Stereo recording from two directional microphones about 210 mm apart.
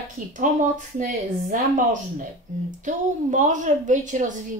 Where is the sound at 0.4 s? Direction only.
40° right (ahead or behind).